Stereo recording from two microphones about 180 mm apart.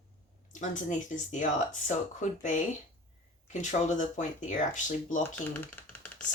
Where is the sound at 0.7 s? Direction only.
45° left (ahead or behind).